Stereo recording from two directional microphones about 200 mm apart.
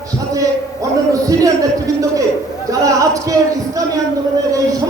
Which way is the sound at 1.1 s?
15° right (ahead or behind).